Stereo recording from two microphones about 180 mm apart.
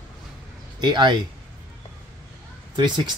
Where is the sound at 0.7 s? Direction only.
25° right (ahead or behind).